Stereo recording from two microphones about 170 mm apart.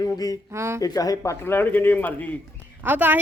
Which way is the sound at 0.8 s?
20° left (ahead or behind).